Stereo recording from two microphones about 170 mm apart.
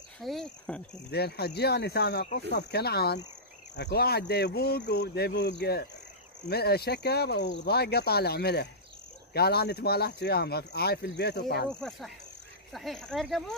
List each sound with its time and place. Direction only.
0.2 s speech: centre (ahead or behind)
1.1 s speech: 70° left (ahead or behind)
12.7 s speech: centre (ahead or behind)